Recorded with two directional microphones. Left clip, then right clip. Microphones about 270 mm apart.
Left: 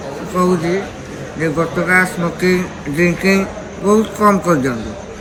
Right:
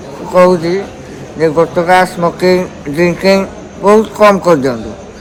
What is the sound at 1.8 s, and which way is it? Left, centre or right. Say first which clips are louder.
Speech: right 3 dB; right.